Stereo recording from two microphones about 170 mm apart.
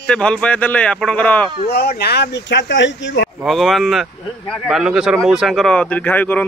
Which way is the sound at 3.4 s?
Centre (ahead or behind).